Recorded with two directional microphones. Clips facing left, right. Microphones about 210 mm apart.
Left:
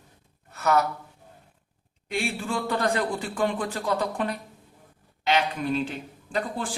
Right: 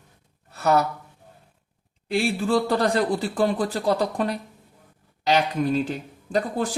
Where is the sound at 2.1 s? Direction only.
35° right (ahead or behind).